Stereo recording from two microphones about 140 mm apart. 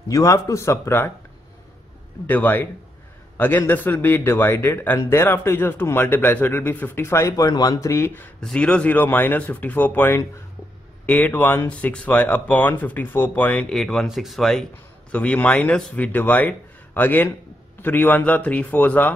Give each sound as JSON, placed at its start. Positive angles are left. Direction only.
{"t": 0.1, "sound": "a man's voice", "side_deg": 25}
{"t": 2.2, "sound": "speech", "side_deg": 10}
{"t": 8.4, "sound": "speech", "side_deg": 5}